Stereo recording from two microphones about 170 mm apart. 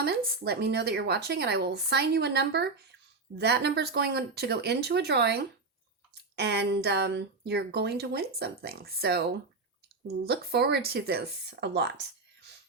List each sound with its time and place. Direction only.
0.0 s speech: 65° right (ahead or behind)
10.2 s speech: 70° right (ahead or behind)